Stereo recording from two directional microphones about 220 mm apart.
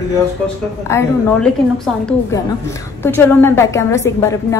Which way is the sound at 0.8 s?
5° left (ahead or behind).